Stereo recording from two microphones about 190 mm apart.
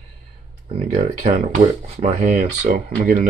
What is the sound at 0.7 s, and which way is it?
Speech, 35° right (ahead or behind).